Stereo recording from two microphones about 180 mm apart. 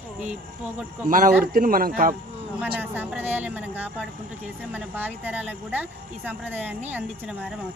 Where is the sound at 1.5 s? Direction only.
50° right (ahead or behind).